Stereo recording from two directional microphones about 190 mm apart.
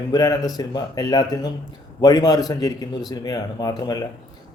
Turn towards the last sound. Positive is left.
turn(degrees=20)  # may be behind; listen again after turning